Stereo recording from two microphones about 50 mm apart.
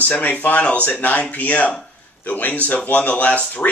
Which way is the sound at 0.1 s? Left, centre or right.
Left.